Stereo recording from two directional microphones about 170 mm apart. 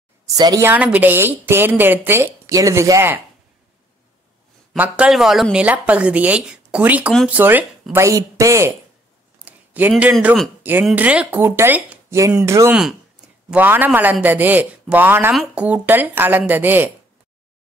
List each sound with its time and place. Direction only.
0.3 s a woman's voice: 20° right (ahead or behind)
0.7 s speech: 10° right (ahead or behind)
4.7 s speech: 10° right (ahead or behind)
9.4 s a sound: 10° right (ahead or behind)
10.1 s speech: centre (ahead or behind)
10.6 s speech: 10° right (ahead or behind)